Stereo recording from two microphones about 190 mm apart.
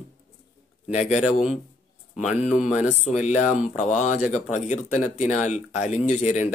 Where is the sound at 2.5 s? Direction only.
40° left (ahead or behind).